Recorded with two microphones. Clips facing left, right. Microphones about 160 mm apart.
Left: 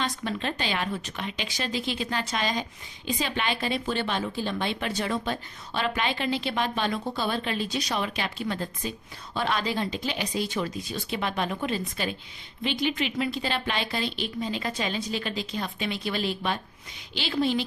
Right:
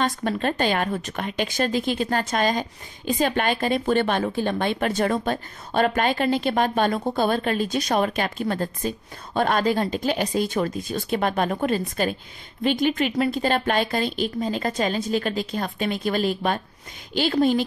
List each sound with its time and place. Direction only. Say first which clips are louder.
0.0 s a woman's voice: right 6 dB; 50° right (ahead or behind)